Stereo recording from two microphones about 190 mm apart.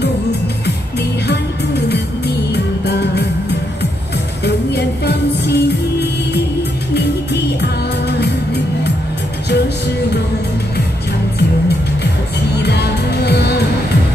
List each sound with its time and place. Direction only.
1.2 s music: 60° left (ahead or behind)
4.5 s music: 60° left (ahead or behind)
7.6 s music: 60° left (ahead or behind)
12.5 s music: 60° left (ahead or behind)